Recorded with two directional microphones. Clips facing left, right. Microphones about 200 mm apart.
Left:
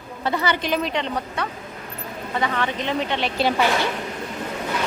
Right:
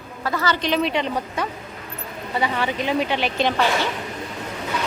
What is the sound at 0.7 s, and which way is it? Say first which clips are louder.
Speech: right 2 dB; 5° right (ahead or behind).